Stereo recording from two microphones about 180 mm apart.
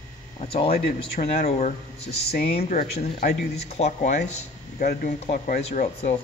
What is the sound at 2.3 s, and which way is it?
Speech, 60° left (ahead or behind).